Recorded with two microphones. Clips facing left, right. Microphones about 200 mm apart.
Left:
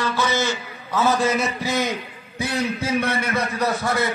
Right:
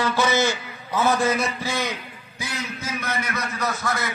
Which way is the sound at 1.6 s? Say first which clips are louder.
Left 4 dB; 20° left (ahead or behind).